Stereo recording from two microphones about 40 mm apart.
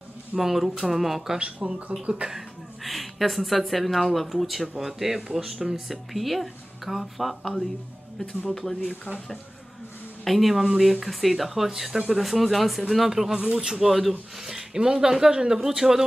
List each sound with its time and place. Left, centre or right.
0.4 s speech: centre
1.6 s speech: right
2.8 s speech: centre
10.2 s speech: centre